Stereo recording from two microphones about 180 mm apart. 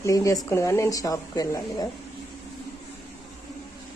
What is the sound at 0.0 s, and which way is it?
A woman's voice, 20° left (ahead or behind).